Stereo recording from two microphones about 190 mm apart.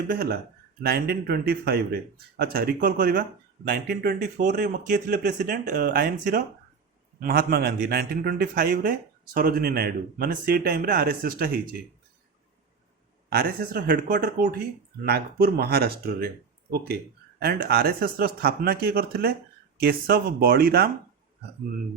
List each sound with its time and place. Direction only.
0.1 s a man's voice: 55° right (ahead or behind)
13.3 s a man's voice: 55° right (ahead or behind)